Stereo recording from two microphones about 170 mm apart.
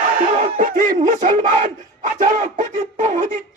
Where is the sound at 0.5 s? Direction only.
55° right (ahead or behind).